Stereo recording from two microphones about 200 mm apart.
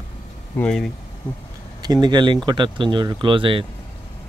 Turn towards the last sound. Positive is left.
turn(degrees=-25)  # may be behind; listen again after turning